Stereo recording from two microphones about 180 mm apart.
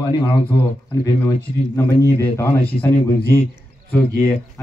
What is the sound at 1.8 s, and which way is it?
Speech, 15° left (ahead or behind).